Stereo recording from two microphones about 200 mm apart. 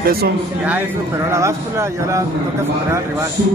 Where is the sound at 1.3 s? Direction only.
15° right (ahead or behind).